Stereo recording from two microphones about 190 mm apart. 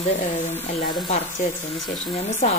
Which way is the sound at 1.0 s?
35° left (ahead or behind).